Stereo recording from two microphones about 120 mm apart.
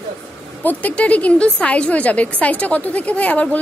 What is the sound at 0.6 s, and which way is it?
A woman's voice, 15° left (ahead or behind).